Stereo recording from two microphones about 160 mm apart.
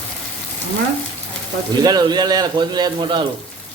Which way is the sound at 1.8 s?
25° right (ahead or behind).